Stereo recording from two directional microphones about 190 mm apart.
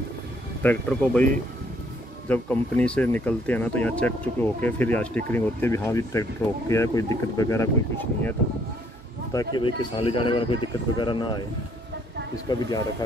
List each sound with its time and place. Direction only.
0.6 s speech: 10° left (ahead or behind)
2.2 s speech: 10° left (ahead or behind); by 11.4 s 25° left (ahead or behind)
12.4 s speech: 20° left (ahead or behind)